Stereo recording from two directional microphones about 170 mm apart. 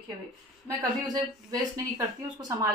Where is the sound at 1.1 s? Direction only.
20° right (ahead or behind).